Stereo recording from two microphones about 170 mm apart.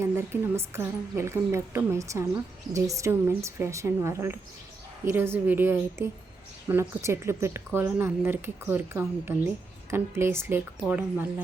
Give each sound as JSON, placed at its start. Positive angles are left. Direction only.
{"t": 0.2, "sound": "a woman's voice", "side_deg": -15}